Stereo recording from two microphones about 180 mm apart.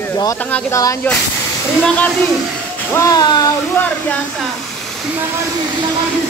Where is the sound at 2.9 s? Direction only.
20° left (ahead or behind).